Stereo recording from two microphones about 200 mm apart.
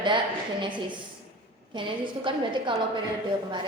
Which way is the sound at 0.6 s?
25° right (ahead or behind).